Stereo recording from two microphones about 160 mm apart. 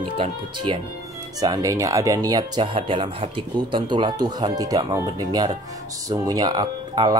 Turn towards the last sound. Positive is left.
turn(degrees=-25)  # may be behind; listen again after turning